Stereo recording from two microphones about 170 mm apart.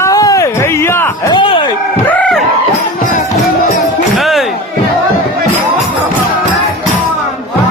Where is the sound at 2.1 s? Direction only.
10° left (ahead or behind).